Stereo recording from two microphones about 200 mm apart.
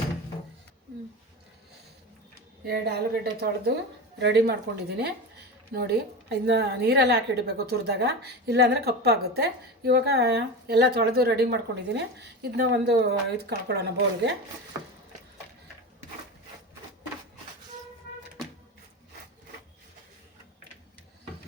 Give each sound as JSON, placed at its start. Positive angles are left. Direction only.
{"t": 2.6, "sound": "a woman's voice", "side_deg": -55}